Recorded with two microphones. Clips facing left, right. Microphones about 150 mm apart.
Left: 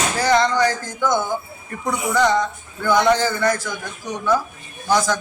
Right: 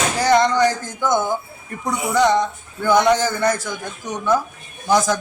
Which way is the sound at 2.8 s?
20° right (ahead or behind).